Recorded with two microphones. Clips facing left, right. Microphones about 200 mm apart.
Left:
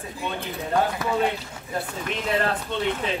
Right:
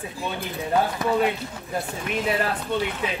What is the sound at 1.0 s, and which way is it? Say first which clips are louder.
Speech: right 3 dB; 15° right (ahead or behind).